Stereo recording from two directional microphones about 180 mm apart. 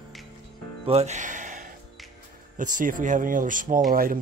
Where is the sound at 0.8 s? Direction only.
35° right (ahead or behind).